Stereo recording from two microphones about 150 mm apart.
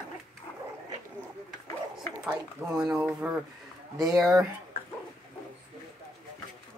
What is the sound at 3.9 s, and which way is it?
Speech, 25° right (ahead or behind).